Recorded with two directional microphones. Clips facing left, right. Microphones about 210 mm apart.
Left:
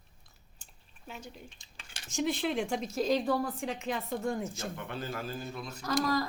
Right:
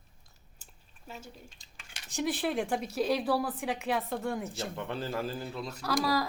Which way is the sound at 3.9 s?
75° right (ahead or behind).